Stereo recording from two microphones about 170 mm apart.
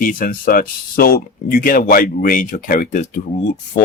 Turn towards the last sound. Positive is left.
turn(degrees=45)  # may be behind; listen again after turning